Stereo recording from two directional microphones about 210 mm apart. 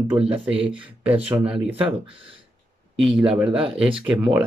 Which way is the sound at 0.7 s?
5° right (ahead or behind).